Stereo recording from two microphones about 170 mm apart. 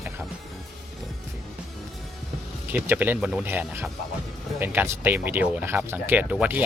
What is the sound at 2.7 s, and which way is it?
Speech, 10° right (ahead or behind).